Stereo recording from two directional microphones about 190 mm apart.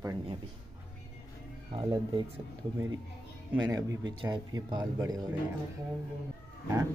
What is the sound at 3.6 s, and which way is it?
Speech, 20° right (ahead or behind).